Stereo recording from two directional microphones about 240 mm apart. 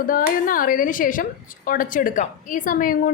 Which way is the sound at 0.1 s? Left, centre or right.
Left.